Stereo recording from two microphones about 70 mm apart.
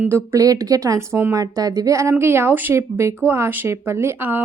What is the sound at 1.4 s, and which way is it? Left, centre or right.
Speech, right.